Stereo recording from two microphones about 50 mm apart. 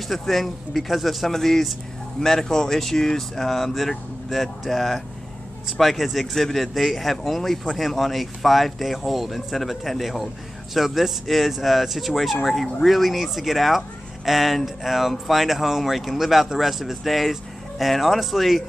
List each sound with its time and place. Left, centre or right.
0.1 s a man's voice: centre